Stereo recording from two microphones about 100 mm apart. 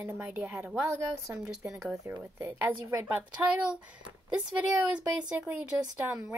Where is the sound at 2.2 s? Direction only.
20° right (ahead or behind).